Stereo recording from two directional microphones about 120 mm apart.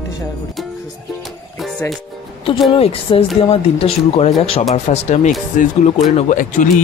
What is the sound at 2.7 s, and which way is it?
Speech, 50° left (ahead or behind).